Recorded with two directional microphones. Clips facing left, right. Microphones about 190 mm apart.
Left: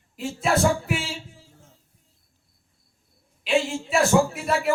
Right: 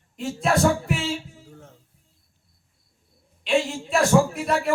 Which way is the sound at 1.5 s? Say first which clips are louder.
Right 9 dB; 65° right (ahead or behind).